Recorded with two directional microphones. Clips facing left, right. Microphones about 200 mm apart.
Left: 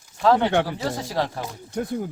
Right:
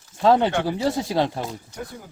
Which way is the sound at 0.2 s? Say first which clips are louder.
Right 1 dB; 25° right (ahead or behind).